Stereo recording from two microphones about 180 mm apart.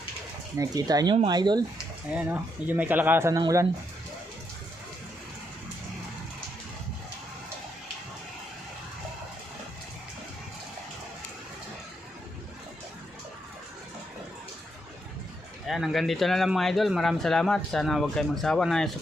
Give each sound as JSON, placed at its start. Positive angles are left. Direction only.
{"t": 0.5, "sound": "speech", "side_deg": -20}
{"t": 2.1, "sound": "speech", "side_deg": -10}
{"t": 15.6, "sound": "speech", "side_deg": 0}